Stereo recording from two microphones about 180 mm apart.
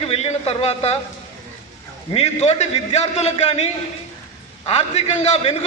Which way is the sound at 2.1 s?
35° left (ahead or behind).